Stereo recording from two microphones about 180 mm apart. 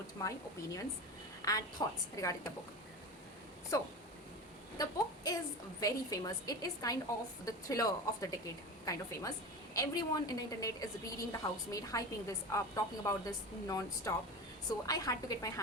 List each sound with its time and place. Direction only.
0.2 s a woman's voice: 20° left (ahead or behind)
4.8 s a woman's voice: 20° left (ahead or behind)